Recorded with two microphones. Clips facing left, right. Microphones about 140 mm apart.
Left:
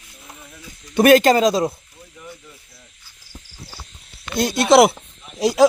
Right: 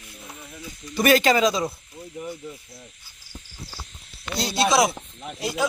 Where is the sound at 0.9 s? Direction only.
50° left (ahead or behind).